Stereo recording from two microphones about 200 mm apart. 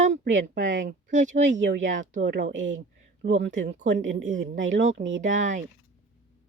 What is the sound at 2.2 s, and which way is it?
Speech, 60° right (ahead or behind).